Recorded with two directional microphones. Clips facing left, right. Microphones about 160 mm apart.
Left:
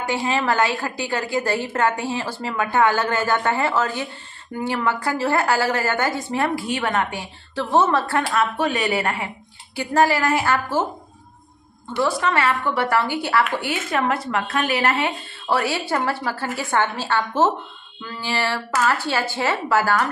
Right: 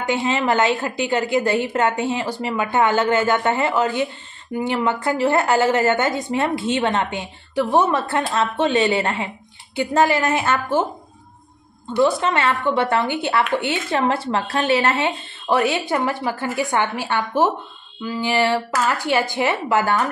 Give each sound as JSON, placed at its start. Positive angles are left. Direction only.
{"t": 0.0, "sound": "a woman's voice", "side_deg": -20}
{"t": 12.0, "sound": "a woman's voice", "side_deg": -20}
{"t": 18.0, "sound": "mantra", "side_deg": -15}
{"t": 18.9, "sound": "a woman's voice", "side_deg": -15}